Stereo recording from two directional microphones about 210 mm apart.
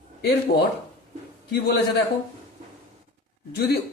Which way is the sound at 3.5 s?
50° left (ahead or behind).